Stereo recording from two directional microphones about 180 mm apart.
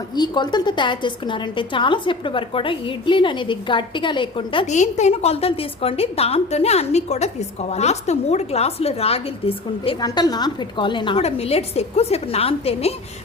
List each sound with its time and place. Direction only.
0.1 s a woman's voice: 25° left (ahead or behind)
4.6 s a woman's voice: 40° left (ahead or behind)